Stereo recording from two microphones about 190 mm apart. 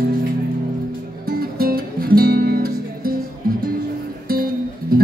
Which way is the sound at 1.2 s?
50° right (ahead or behind).